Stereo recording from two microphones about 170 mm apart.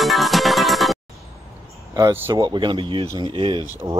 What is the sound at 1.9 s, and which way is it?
Speech, 15° right (ahead or behind).